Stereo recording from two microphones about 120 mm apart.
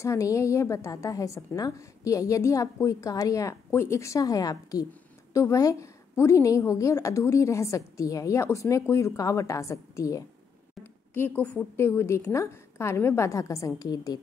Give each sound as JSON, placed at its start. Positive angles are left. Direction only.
{"t": 0.0, "sound": "a woman's voice", "side_deg": 25}
{"t": 10.8, "sound": "a woman's voice", "side_deg": 15}